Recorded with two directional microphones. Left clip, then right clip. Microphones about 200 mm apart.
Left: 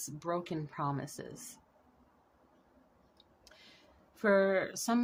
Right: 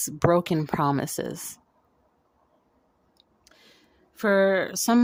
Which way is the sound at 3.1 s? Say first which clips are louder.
Right 3 dB; 55° right (ahead or behind).